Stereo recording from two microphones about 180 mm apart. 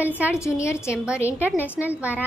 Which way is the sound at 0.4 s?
15° left (ahead or behind).